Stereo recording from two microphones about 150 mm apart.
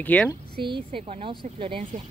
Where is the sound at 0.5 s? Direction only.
35° right (ahead or behind).